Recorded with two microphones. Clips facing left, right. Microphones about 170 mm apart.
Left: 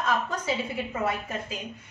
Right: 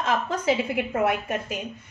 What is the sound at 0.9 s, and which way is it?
Speech, 75° right (ahead or behind).